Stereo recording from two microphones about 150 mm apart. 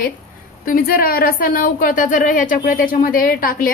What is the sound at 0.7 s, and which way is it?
A woman's voice, 70° left (ahead or behind).